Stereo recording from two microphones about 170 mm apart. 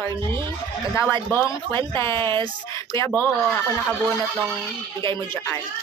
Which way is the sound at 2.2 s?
30° right (ahead or behind).